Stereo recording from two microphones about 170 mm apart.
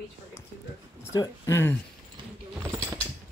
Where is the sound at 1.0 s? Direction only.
20° left (ahead or behind).